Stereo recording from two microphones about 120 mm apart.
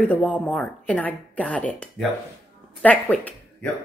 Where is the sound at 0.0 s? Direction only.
10° left (ahead or behind).